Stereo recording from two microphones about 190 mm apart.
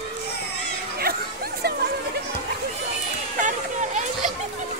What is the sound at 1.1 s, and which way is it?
Chatter, 55° right (ahead or behind).